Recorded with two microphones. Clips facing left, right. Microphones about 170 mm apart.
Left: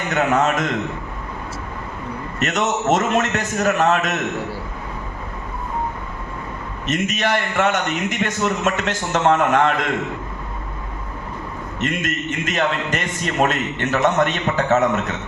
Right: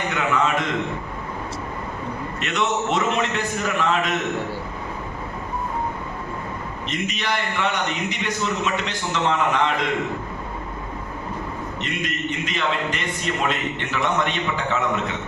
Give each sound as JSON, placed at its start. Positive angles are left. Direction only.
{"t": 0.1, "sound": "a man's voice", "side_deg": 45}
{"t": 2.4, "sound": "a man's voice", "side_deg": 45}
{"t": 6.8, "sound": "a man's voice", "side_deg": 45}
{"t": 11.8, "sound": "a man's voice", "side_deg": 50}